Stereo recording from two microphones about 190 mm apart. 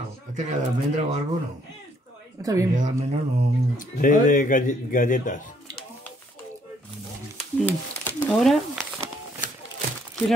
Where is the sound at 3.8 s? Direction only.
45° left (ahead or behind).